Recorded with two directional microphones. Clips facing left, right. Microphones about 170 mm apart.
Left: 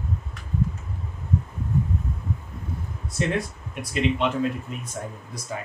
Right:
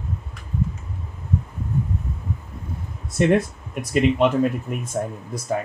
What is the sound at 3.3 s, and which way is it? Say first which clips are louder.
Speech: right 8 dB; 45° right (ahead or behind).